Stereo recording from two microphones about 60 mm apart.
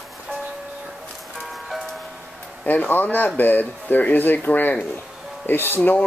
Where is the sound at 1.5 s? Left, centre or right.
Centre.